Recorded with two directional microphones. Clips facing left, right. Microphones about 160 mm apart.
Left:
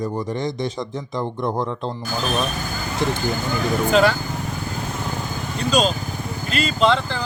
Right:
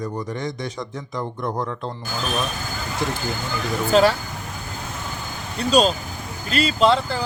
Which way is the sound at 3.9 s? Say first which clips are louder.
Right 1 dB; 35° right (ahead or behind).